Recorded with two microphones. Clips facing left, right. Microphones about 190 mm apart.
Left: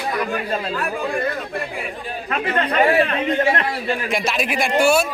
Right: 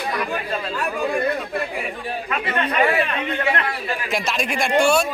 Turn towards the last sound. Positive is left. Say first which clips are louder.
# left 1 dB
turn(degrees=5)  # may be behind; listen again after turning